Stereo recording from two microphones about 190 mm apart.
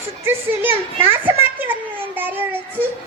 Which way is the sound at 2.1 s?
10° right (ahead or behind).